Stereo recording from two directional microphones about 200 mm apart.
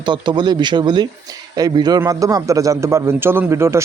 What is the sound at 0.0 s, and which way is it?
A man's voice, 20° right (ahead or behind).